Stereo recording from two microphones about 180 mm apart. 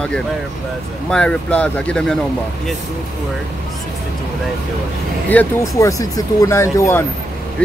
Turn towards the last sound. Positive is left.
turn(degrees=15)  # may be behind; listen again after turning